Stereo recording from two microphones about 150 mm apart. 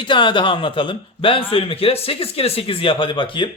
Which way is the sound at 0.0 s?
35° left (ahead or behind).